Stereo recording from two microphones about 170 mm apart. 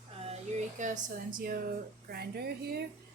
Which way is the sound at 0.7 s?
50° right (ahead or behind).